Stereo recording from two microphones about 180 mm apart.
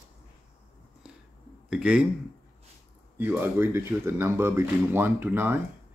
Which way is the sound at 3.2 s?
10° right (ahead or behind).